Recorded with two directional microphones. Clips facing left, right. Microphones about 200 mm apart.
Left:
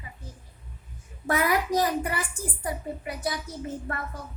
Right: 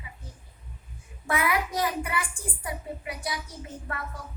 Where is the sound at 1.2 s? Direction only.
40° left (ahead or behind).